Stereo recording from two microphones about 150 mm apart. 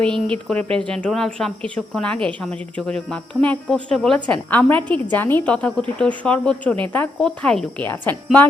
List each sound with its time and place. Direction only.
0.0 s speech: 5° left (ahead or behind)